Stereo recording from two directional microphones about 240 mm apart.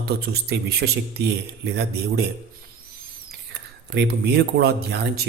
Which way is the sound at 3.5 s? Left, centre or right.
Right.